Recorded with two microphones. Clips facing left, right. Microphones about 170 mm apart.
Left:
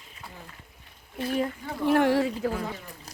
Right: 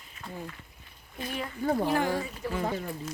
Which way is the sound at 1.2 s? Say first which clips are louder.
Left 8 dB; 30° left (ahead or behind).